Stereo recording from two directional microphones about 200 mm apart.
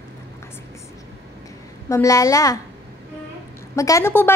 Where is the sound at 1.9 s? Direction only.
15° left (ahead or behind).